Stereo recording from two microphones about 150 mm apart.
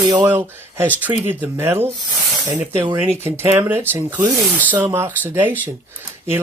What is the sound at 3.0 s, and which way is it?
Speech, 15° right (ahead or behind).